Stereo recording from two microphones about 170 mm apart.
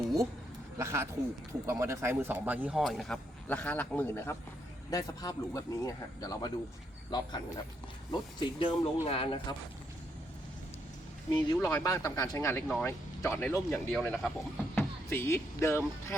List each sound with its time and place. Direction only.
0.8 s speech: 15° right (ahead or behind); by 9.6 s 30° left (ahead or behind)
11.3 s speech: 25° left (ahead or behind); by 14.3 s centre (ahead or behind)
14.8 s speech: 15° left (ahead or behind)